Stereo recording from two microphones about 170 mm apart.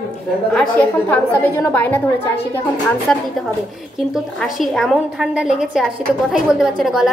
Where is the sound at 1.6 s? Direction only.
10° left (ahead or behind).